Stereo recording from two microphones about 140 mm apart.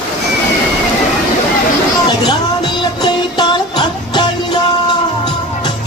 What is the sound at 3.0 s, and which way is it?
Music, 30° left (ahead or behind).